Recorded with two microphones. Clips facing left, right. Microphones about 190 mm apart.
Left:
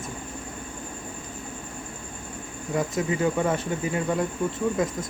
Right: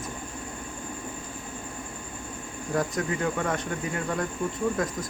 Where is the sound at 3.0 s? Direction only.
20° left (ahead or behind).